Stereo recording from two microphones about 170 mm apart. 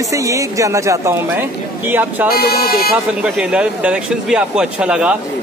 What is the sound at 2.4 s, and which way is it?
Speech, 65° left (ahead or behind).